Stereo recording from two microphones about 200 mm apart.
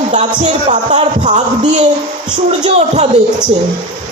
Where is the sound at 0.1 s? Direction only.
35° right (ahead or behind).